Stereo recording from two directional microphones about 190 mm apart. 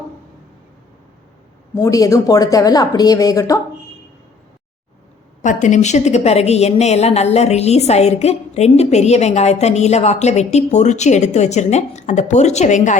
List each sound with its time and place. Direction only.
1.7 s a woman's voice: 15° left (ahead or behind)
5.4 s a woman's voice: 40° left (ahead or behind)